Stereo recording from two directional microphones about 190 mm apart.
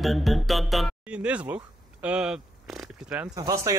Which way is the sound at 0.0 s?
Centre (ahead or behind).